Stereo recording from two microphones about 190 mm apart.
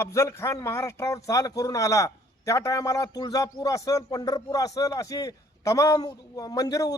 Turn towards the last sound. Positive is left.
turn(degrees=20)  # may be behind; listen again after turning